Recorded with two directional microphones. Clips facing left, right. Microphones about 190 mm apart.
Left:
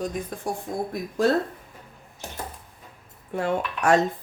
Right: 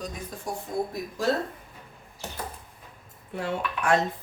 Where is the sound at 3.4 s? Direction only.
50° left (ahead or behind).